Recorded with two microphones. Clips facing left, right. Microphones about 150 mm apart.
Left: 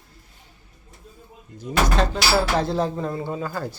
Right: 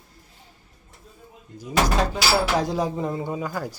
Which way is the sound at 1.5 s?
10° right (ahead or behind).